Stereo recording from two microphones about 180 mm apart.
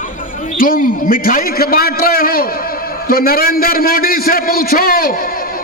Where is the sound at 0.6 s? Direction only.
50° left (ahead or behind).